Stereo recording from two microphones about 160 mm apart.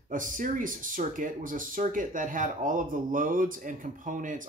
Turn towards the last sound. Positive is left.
turn(degrees=-55)  # may be behind; listen again after turning